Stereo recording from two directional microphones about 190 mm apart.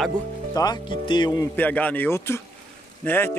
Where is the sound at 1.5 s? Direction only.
10° left (ahead or behind).